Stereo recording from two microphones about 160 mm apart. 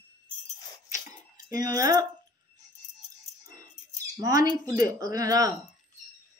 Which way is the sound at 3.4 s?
25° right (ahead or behind).